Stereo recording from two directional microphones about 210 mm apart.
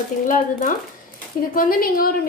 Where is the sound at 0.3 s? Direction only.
40° left (ahead or behind).